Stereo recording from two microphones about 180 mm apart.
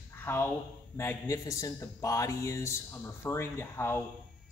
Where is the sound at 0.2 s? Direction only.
10° left (ahead or behind).